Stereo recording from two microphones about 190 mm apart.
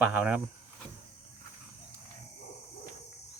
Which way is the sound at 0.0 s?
10° right (ahead or behind).